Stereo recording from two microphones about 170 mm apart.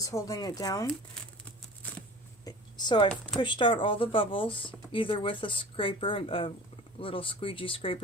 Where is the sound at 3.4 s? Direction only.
30° left (ahead or behind).